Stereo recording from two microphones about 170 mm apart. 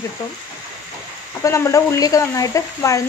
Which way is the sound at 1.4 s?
15° left (ahead or behind).